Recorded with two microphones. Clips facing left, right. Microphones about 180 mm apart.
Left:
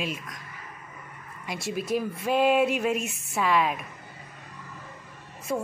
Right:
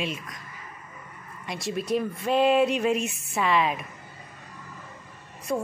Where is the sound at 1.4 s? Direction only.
5° left (ahead or behind).